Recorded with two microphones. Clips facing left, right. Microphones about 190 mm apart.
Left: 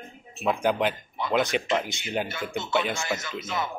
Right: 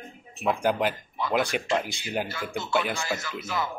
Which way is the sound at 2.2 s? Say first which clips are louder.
Left 1 dB; 20° left (ahead or behind).